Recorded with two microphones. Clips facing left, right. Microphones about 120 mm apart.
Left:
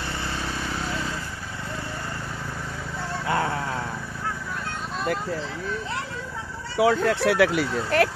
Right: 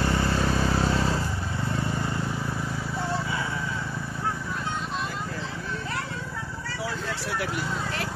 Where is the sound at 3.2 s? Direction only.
65° left (ahead or behind).